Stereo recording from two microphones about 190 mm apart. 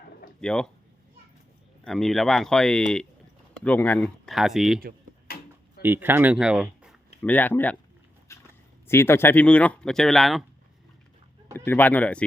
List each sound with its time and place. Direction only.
0.4 s speech: 5° left (ahead or behind)
1.8 s speech: centre (ahead or behind)
5.3 s a sound: 50° left (ahead or behind)
5.8 s speech: 10° right (ahead or behind)
7.2 s speech: 10° left (ahead or behind)
8.3 s a sound: 15° left (ahead or behind)
8.9 s speech: 15° left (ahead or behind)
11.5 s speech: 10° left (ahead or behind)